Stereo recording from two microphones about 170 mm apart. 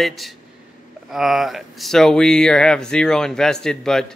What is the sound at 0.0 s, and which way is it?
Speech, centre (ahead or behind).